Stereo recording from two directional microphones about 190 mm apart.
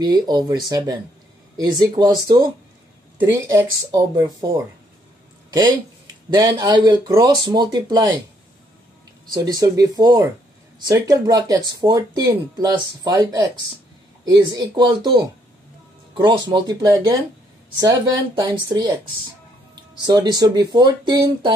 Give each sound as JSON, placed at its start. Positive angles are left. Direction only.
{"t": 0.0, "sound": "speech", "side_deg": -20}
{"t": 9.3, "sound": "speech", "side_deg": -20}
{"t": 20.1, "sound": "speech", "side_deg": -20}